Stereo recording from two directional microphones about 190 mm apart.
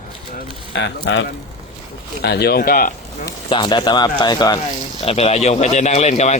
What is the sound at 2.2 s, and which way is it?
Speech, 60° left (ahead or behind).